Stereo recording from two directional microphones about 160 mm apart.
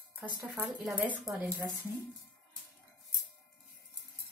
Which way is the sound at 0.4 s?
10° right (ahead or behind).